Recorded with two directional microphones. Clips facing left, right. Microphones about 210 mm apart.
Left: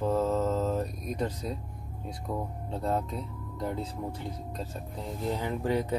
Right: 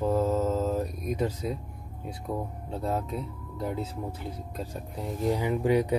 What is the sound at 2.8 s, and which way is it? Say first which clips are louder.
Speech: even; 5° right (ahead or behind).